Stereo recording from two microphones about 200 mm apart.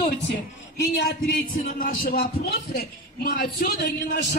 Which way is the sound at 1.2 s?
45° left (ahead or behind).